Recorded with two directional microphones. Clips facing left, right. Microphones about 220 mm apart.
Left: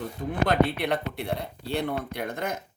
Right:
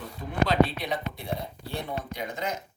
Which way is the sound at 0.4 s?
55° left (ahead or behind).